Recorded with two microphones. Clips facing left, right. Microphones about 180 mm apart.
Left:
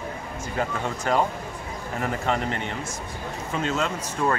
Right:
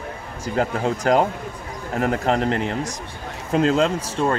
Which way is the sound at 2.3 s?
35° right (ahead or behind).